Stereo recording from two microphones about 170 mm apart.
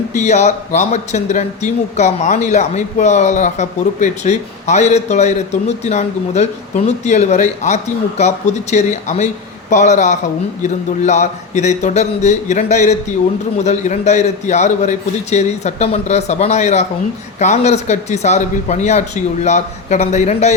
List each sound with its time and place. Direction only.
0.1 s a man's voice: 45° left (ahead or behind)